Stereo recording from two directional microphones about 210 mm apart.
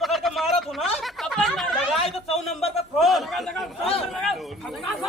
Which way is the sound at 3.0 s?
Centre (ahead or behind).